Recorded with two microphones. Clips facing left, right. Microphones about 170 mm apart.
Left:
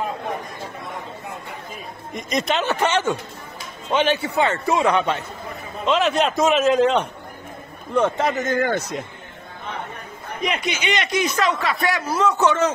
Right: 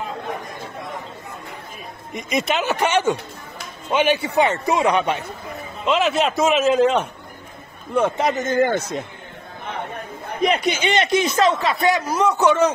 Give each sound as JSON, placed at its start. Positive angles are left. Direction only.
{"t": 2.1, "sound": "a man's voice", "side_deg": -5}
{"t": 5.9, "sound": "a man's voice", "side_deg": -5}
{"t": 10.4, "sound": "speech", "side_deg": -35}